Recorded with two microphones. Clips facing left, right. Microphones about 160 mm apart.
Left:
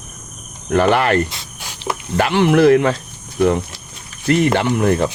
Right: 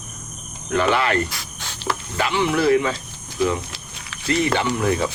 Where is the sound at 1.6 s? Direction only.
15° left (ahead or behind).